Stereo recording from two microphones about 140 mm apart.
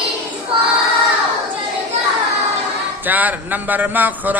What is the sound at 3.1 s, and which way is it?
Speech, 10° right (ahead or behind).